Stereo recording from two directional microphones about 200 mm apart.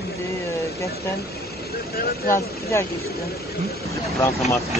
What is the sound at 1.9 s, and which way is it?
Speech, 45° left (ahead or behind).